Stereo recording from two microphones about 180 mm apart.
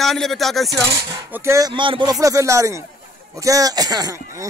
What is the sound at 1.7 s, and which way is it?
Speech, 25° right (ahead or behind).